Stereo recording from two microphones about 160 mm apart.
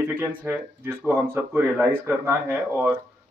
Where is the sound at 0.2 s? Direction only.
10° right (ahead or behind).